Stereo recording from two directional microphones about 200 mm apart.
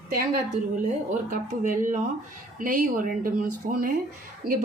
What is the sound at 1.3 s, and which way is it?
A woman's voice, 40° right (ahead or behind).